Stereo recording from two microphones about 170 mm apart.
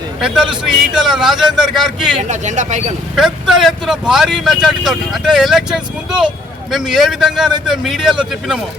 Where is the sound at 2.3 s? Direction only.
45° right (ahead or behind).